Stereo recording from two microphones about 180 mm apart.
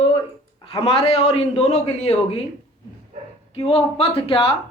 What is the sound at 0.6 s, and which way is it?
Speech, 30° left (ahead or behind).